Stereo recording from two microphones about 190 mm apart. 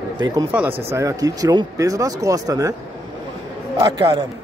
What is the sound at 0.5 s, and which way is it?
Speech, 10° right (ahead or behind).